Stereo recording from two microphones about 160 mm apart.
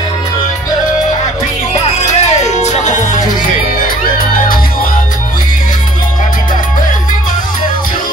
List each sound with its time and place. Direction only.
2.0 s music: 45° left (ahead or behind)